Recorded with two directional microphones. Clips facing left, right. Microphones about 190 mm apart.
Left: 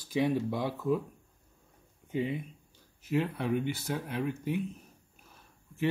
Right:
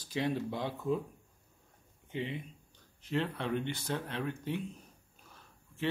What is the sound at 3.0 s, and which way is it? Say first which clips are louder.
Speech: left 4 dB; 10° left (ahead or behind).